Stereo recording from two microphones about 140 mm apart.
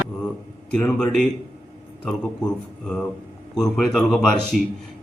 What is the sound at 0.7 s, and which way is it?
Speech, 5° left (ahead or behind).